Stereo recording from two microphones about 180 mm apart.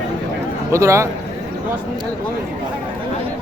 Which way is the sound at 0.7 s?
15° right (ahead or behind).